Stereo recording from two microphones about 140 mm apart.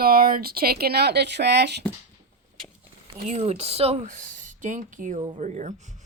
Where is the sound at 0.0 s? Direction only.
90° right.